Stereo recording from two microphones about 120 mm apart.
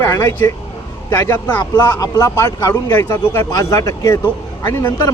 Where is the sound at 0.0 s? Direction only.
20° left (ahead or behind).